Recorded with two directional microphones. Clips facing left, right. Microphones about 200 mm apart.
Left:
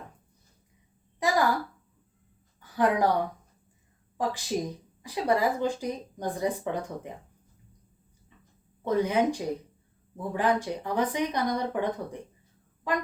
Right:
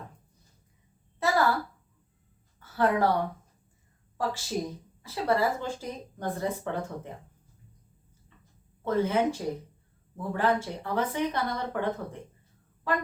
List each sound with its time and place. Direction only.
1.2 s a sound: 15° left (ahead or behind)
2.6 s speech: 15° left (ahead or behind)
4.2 s speech: 15° left (ahead or behind)
8.8 s speech: 15° left (ahead or behind)